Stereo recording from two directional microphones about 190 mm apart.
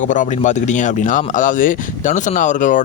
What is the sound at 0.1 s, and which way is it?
Speech, 40° left (ahead or behind).